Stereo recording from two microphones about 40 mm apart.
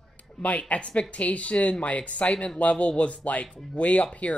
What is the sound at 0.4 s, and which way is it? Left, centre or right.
A woman's voice, left.